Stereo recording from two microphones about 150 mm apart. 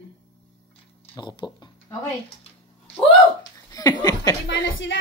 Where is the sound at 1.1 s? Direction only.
30° left (ahead or behind).